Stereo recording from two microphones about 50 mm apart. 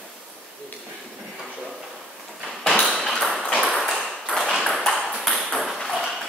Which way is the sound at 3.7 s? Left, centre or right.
Centre.